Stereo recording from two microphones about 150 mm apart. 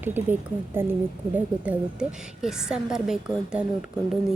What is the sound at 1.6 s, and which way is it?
A woman's voice, 5° right (ahead or behind).